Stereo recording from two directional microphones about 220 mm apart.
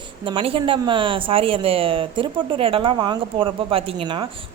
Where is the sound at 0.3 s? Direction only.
25° right (ahead or behind).